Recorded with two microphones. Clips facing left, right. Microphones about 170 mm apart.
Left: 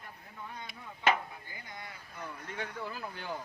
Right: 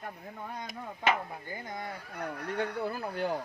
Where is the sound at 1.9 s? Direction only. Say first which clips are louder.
Right 7 dB; 70° right (ahead or behind).